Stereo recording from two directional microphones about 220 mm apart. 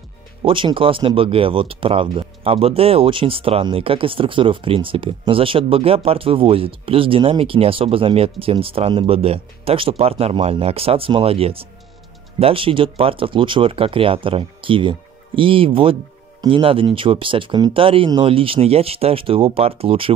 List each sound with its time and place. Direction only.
0.4 s speech: 25° right (ahead or behind)